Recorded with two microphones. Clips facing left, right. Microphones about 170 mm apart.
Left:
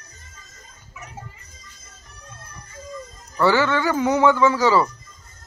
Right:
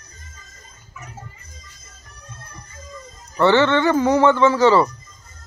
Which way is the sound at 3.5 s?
5° left (ahead or behind).